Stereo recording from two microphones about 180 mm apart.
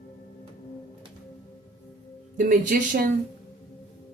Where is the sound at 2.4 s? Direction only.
50° right (ahead or behind).